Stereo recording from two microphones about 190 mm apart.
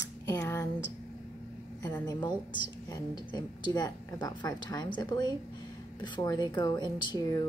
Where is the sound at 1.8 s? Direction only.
20° left (ahead or behind).